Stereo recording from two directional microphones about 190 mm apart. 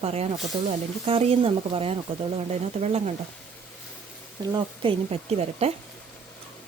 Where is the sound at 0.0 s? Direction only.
35° right (ahead or behind).